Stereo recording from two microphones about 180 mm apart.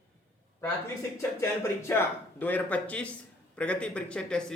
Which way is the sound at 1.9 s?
10° left (ahead or behind).